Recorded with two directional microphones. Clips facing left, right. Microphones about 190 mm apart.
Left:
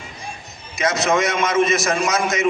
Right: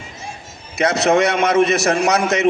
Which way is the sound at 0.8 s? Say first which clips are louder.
Right 4 dB; 65° right (ahead or behind).